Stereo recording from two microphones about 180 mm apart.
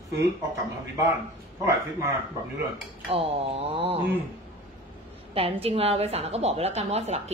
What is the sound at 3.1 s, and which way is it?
Speech, 30° right (ahead or behind).